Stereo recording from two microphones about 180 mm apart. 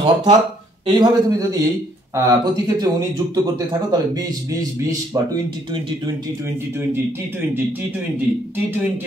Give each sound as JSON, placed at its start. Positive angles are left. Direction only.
{"t": 0.0, "sound": "speech", "side_deg": -25}